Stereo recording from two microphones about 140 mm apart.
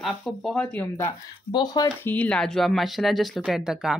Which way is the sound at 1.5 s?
30° left (ahead or behind).